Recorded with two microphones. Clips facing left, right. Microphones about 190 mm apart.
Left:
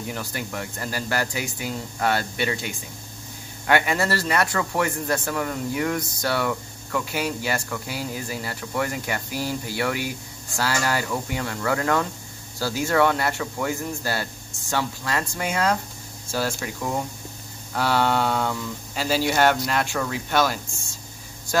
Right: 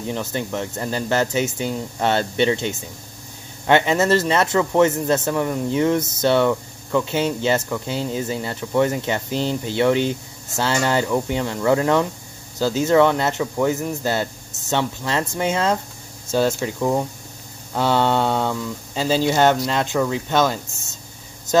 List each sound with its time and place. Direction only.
0.0 s a man's voice: 20° right (ahead or behind)